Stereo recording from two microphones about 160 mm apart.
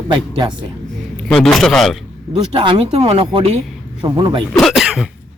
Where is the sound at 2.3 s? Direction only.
35° right (ahead or behind).